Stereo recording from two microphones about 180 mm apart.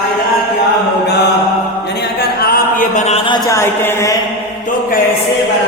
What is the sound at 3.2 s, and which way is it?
Speech, 20° left (ahead or behind).